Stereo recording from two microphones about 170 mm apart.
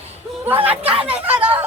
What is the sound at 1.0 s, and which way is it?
Speech, 5° right (ahead or behind).